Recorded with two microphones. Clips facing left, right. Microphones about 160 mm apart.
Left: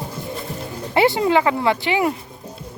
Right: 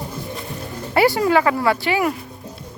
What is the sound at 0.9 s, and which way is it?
Speech, 20° left (ahead or behind).